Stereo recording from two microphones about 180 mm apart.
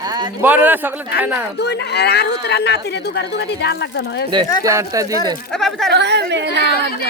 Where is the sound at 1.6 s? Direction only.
65° left (ahead or behind).